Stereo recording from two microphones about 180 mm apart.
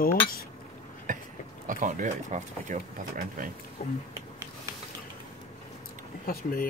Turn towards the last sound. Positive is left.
turn(degrees=55)  # may be behind; listen again after turning